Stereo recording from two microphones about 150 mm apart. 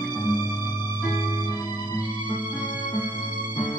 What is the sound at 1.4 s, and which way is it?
Music, 30° left (ahead or behind).